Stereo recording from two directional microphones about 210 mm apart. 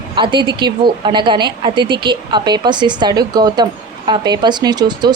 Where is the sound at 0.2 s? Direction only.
20° right (ahead or behind).